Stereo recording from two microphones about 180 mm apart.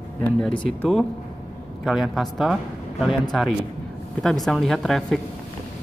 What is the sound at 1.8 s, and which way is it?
A man's voice, centre (ahead or behind).